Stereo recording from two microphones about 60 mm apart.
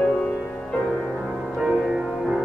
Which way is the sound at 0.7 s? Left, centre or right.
Centre.